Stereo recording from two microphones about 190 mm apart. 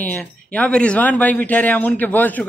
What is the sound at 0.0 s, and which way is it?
Speech, 10° left (ahead or behind).